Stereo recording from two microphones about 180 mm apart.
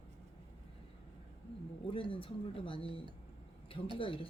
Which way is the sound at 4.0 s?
30° left (ahead or behind).